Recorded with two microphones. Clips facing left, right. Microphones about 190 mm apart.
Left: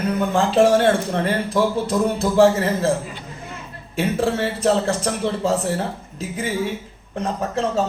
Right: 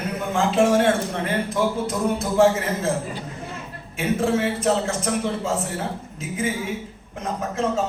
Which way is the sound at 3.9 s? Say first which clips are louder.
Left 1 dB; 35° left (ahead or behind).